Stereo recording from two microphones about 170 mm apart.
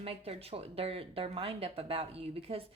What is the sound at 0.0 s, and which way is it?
A woman's voice, 35° right (ahead or behind).